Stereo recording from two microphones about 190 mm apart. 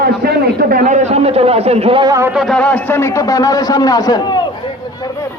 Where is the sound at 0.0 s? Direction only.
55° right (ahead or behind); by 2.3 s 20° right (ahead or behind).